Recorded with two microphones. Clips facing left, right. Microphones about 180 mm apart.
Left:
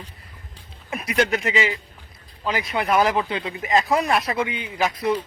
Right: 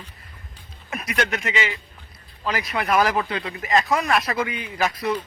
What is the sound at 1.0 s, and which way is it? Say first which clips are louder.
A man's voice: left 4 dB; 30° left (ahead or behind).